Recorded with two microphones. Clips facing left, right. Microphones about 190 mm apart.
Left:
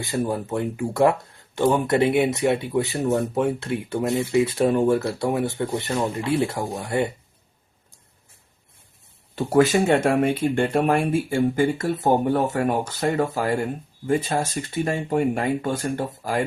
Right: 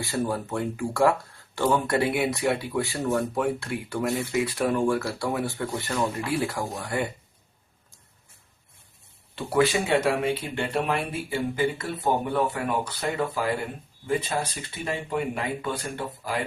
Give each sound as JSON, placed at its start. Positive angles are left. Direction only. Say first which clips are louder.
{"t": 0.0, "sound": "speech", "louder": "left 3 dB", "side_deg": 20}
{"t": 9.3, "sound": "speech", "louder": "left 5 dB", "side_deg": 45}